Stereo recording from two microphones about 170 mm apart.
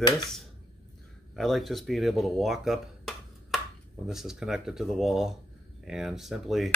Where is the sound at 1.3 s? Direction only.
Centre (ahead or behind).